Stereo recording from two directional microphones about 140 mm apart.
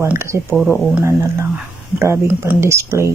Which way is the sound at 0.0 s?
20° right (ahead or behind).